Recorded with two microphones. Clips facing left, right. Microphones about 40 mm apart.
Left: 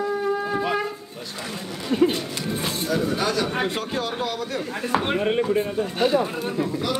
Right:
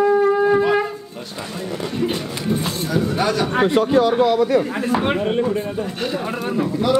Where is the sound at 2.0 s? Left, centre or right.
Centre.